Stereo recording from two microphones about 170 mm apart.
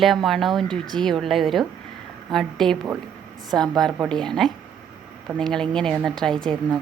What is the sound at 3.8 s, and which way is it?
A woman's voice, centre (ahead or behind).